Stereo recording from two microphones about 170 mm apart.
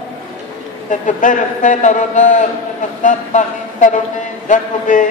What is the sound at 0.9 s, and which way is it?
A man's voice, 50° left (ahead or behind).